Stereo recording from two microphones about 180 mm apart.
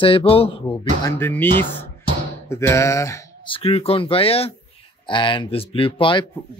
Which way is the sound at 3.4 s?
30° left (ahead or behind).